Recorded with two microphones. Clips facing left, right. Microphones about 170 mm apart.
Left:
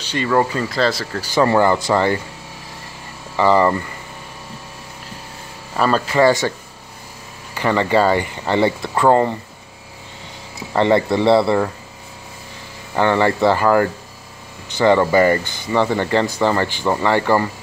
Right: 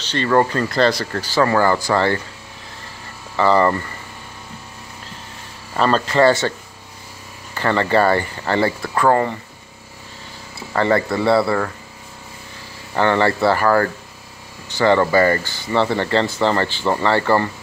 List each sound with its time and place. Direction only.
0.0 s speech: 10° left (ahead or behind)
1.3 s speech: 20° left (ahead or behind)
3.3 s speech: 15° left (ahead or behind)
5.8 s speech: 10° left (ahead or behind)
7.5 s speech: 15° left (ahead or behind)
10.7 s speech: 20° left (ahead or behind)
12.9 s speech: 15° left (ahead or behind)